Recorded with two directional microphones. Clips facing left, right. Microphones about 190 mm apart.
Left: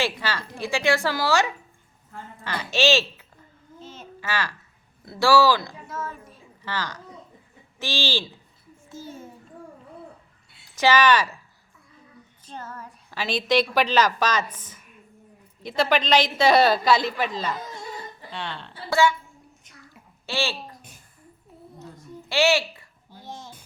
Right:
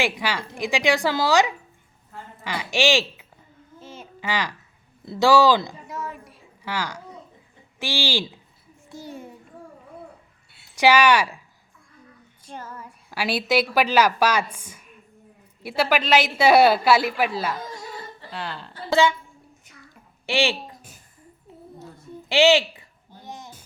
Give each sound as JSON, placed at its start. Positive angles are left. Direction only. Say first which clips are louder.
{"t": 0.0, "sound": "a woman's voice", "louder": "right 2 dB", "side_deg": -15}
{"t": 3.8, "sound": "babbling", "louder": "right 1 dB", "side_deg": -10}
{"t": 5.0, "sound": "a woman's voice", "louder": "right 2 dB", "side_deg": -20}
{"t": 10.8, "sound": "a woman's voice", "louder": "right 2 dB", "side_deg": -10}
{"t": 12.5, "sound": "a woman's voice", "louder": "even", "side_deg": -10}
{"t": 18.9, "sound": "speech", "louder": "right 1 dB", "side_deg": -20}
{"t": 20.2, "sound": "speech", "louder": "right 5 dB", "side_deg": -15}
{"t": 21.8, "sound": "a sound", "louder": "even", "side_deg": -15}